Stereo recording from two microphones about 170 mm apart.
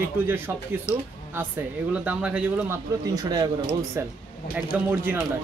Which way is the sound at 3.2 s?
20° right (ahead or behind).